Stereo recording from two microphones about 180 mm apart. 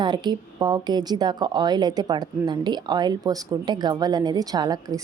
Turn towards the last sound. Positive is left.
turn(degrees=-20)  # may be behind; listen again after turning